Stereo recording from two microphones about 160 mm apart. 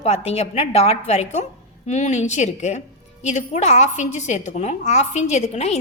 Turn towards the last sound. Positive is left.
turn(degrees=45)  # may be behind; listen again after turning